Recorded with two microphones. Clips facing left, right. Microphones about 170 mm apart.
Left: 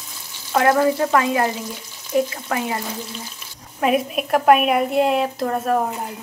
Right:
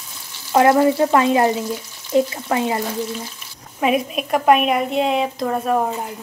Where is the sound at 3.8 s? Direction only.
Centre (ahead or behind).